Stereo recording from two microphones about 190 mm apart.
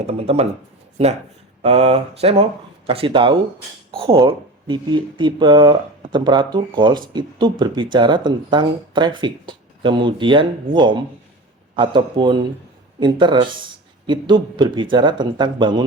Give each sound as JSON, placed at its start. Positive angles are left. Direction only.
{"t": 0.0, "sound": "speech", "side_deg": -30}
{"t": 1.6, "sound": "speech", "side_deg": -35}